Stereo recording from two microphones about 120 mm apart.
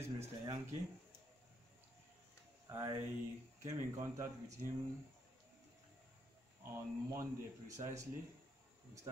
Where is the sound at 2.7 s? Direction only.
25° right (ahead or behind).